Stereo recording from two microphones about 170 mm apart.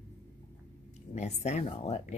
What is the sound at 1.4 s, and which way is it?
Speech, 40° left (ahead or behind).